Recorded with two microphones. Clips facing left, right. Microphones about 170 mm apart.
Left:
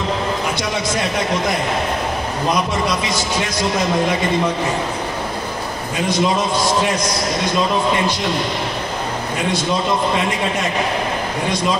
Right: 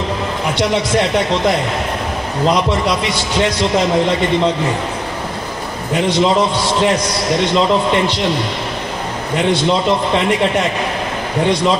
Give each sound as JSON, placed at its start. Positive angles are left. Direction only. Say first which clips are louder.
{"t": 5.9, "sound": "a man's voice", "louder": "right 4 dB", "side_deg": -70}
{"t": 9.5, "sound": "a man's voice", "louder": "right 6 dB", "side_deg": -70}